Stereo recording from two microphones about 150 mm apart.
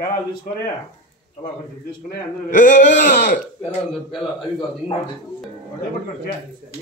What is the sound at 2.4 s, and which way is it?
Speech, 60° left (ahead or behind).